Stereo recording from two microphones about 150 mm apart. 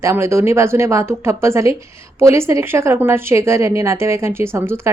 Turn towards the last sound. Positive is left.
turn(degrees=-15)  # may be behind; listen again after turning